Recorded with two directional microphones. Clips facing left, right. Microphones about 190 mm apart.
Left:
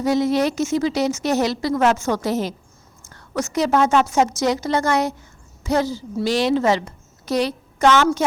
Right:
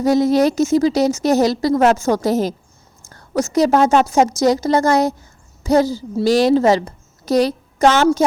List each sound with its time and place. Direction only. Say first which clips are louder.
0.0 s a woman's voice: right 5 dB; 40° right (ahead or behind)